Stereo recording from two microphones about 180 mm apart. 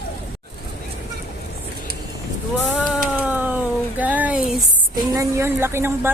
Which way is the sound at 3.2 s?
10° right (ahead or behind).